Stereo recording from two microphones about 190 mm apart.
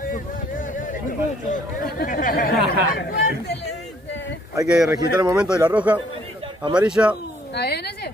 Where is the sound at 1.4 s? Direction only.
50° left (ahead or behind).